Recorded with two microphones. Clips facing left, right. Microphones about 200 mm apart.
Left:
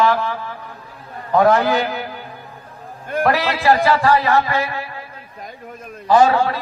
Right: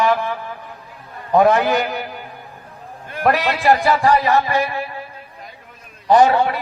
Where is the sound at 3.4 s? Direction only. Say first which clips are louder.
Even; 15° right (ahead or behind).